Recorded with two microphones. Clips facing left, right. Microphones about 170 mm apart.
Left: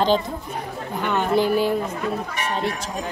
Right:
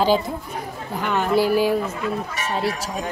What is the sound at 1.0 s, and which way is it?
Speech, 5° right (ahead or behind).